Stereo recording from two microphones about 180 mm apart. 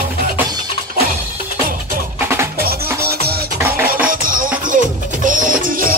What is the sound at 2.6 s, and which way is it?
Music, 60° right (ahead or behind).